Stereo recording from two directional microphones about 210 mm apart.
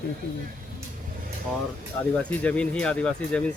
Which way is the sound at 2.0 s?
5° left (ahead or behind).